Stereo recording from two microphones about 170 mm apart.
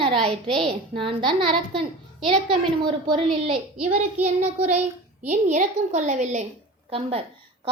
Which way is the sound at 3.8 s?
5° right (ahead or behind).